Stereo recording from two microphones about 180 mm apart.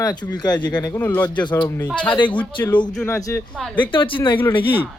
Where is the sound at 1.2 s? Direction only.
25° left (ahead or behind).